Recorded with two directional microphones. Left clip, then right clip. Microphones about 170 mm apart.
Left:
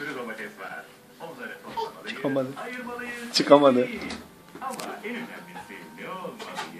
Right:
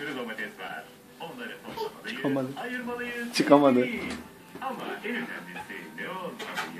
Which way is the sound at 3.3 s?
10° left (ahead or behind).